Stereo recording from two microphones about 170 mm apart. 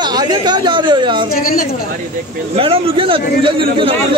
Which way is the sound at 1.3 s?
60° left (ahead or behind).